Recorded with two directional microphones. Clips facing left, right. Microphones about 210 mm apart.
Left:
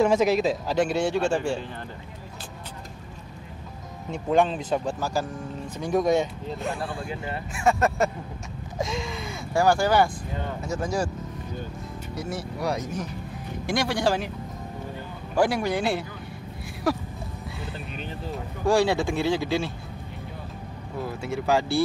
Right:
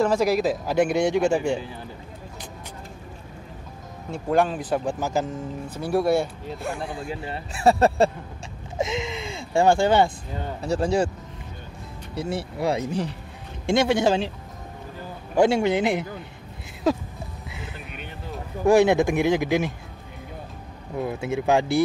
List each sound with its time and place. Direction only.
0.0 s speech: 5° left (ahead or behind); by 1.6 s 15° right (ahead or behind)
4.1 s speech: 5° right (ahead or behind)
5.0 s speech: 20° right (ahead or behind)
5.8 s speech: 10° right (ahead or behind)
7.2 s speech: 35° right (ahead or behind)
8.7 s speech: 20° right (ahead or behind)
12.2 s speech: 30° right (ahead or behind)
15.3 s speech: 25° right (ahead or behind)
18.7 s speech: 20° right (ahead or behind)
21.0 s speech: 20° right (ahead or behind)